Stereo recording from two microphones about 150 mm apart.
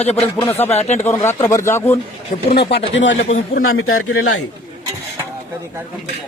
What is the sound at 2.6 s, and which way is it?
Speech, 90° left.